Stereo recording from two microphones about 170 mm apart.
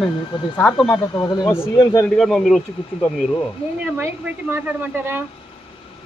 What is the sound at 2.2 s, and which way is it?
Speech, centre (ahead or behind).